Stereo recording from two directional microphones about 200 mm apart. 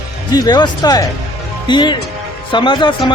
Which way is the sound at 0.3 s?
20° left (ahead or behind).